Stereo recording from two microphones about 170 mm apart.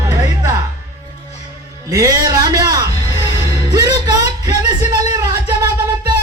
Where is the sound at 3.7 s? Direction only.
25° right (ahead or behind).